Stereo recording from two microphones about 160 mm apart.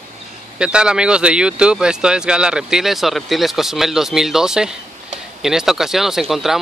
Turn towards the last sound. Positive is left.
turn(degrees=0)  # may be behind; listen again after turning